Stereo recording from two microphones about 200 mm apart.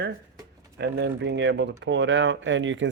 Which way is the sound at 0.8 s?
60° right (ahead or behind).